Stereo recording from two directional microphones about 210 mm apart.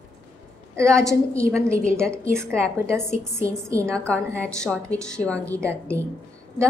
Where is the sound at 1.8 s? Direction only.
5° left (ahead or behind).